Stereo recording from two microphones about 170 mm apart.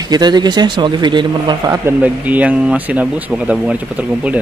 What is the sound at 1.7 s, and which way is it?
Speech, 10° right (ahead or behind).